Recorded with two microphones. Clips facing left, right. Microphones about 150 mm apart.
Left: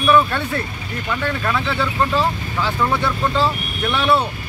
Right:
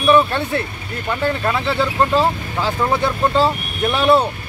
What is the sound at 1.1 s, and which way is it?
Speech, 30° right (ahead or behind).